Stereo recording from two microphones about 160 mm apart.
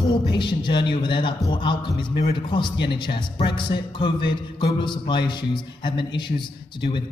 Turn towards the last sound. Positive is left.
turn(degrees=30)  # may be behind; listen again after turning